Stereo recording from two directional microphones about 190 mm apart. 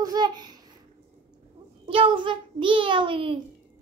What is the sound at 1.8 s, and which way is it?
A child's voice, 30° right (ahead or behind).